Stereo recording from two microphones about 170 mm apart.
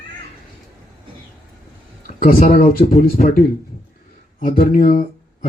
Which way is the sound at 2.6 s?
40° left (ahead or behind).